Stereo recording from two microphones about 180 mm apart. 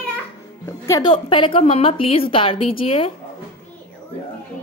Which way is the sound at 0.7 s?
20° left (ahead or behind).